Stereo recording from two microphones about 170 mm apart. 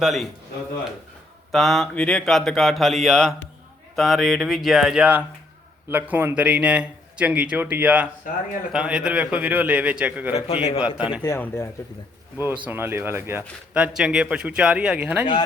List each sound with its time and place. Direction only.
0.0 s speech: centre (ahead or behind)
1.5 s speech: centre (ahead or behind)
10.3 s a man's voice: 35° left (ahead or behind)
10.8 s speech: 5° right (ahead or behind)
11.3 s speech: 10° left (ahead or behind)
12.6 s speech: 10° right (ahead or behind)